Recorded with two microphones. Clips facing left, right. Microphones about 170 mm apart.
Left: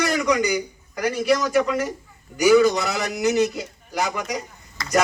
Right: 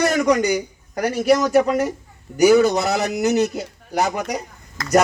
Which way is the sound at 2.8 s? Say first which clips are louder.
Right 4 dB; 40° right (ahead or behind).